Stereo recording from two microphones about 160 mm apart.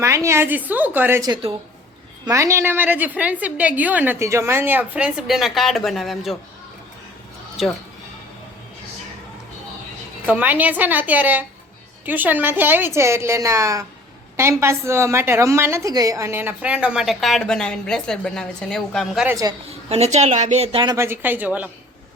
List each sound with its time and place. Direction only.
0.0 s a woman's voice: 20° right (ahead or behind)
2.2 s a woman's voice: 20° right (ahead or behind); by 6.3 s centre (ahead or behind)
10.2 s a woman's voice: 10° right (ahead or behind)
19.9 s speech: 45° right (ahead or behind)
20.8 s a woman's voice: 15° right (ahead or behind)